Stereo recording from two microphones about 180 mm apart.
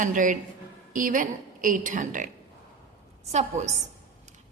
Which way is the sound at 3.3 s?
40° right (ahead or behind).